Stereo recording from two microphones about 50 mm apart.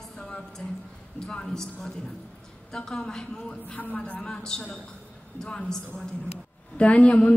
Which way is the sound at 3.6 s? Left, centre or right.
Left.